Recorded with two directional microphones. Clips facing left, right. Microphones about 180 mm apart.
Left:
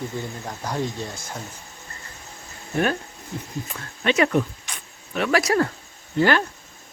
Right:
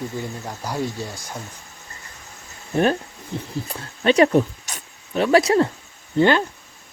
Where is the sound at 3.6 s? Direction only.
35° right (ahead or behind).